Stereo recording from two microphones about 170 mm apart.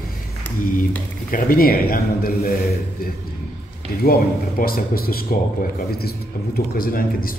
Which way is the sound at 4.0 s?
60° left (ahead or behind).